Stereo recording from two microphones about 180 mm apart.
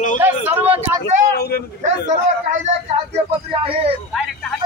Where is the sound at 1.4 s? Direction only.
60° left (ahead or behind).